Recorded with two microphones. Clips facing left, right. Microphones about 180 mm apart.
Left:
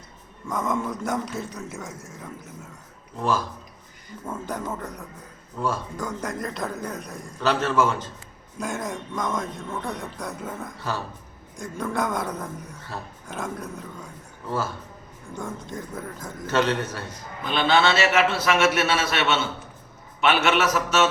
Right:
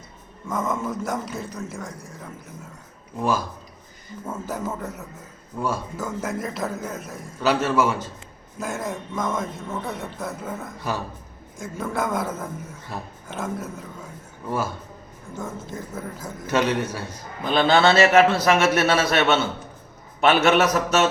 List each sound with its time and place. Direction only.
0.4 s speech: 5° right (ahead or behind)
3.2 s a man's voice: 10° right (ahead or behind)
17.4 s a man's voice: 40° right (ahead or behind)